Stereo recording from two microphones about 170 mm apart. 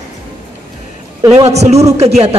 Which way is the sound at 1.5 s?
40° right (ahead or behind).